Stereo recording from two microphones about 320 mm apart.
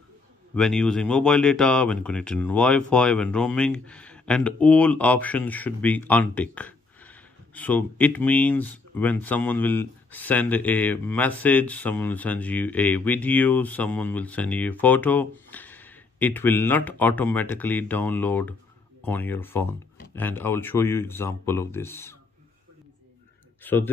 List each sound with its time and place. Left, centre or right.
0.6 s speech: centre
23.6 s speech: centre